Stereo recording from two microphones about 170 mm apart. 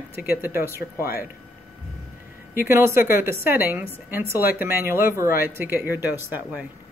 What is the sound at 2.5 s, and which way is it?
Speech, 15° right (ahead or behind).